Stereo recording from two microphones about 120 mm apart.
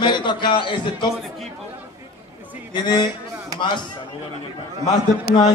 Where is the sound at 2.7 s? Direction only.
35° left (ahead or behind).